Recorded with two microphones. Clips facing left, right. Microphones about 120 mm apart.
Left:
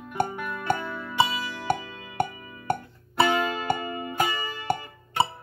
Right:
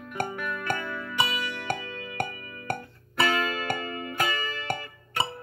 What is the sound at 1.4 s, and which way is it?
Music, 35° left (ahead or behind).